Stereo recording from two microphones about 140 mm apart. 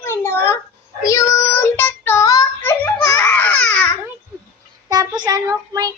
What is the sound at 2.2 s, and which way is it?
Child singing, 25° left (ahead or behind).